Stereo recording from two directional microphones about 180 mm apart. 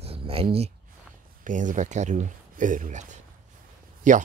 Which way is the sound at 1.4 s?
45° right (ahead or behind).